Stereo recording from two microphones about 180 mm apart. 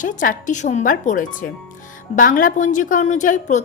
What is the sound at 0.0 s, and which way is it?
Speech, 45° left (ahead or behind).